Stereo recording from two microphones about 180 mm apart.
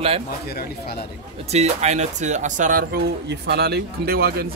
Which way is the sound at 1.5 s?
40° right (ahead or behind).